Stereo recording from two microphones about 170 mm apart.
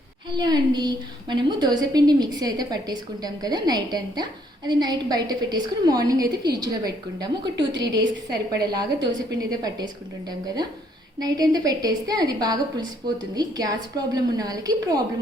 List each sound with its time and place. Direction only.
0.3 s a woman's voice: 25° right (ahead or behind)